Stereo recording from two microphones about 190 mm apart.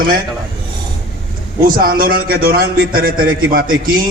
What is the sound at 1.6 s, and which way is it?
A man's voice, 50° right (ahead or behind).